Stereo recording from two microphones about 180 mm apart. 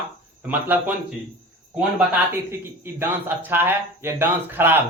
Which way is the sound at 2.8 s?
10° right (ahead or behind).